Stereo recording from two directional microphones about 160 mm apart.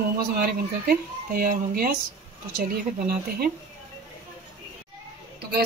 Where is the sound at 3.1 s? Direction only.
70° right (ahead or behind).